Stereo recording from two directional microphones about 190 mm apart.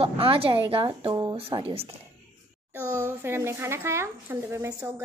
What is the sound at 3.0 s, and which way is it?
A woman's voice, 10° right (ahead or behind).